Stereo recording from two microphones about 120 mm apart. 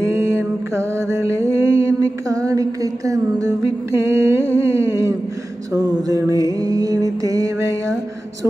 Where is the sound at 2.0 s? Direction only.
30° right (ahead or behind).